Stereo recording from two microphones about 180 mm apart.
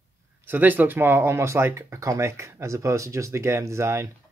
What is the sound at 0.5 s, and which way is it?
Speech, 10° right (ahead or behind).